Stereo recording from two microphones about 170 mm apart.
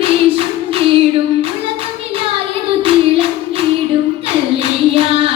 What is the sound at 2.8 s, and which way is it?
Clapping, 35° right (ahead or behind).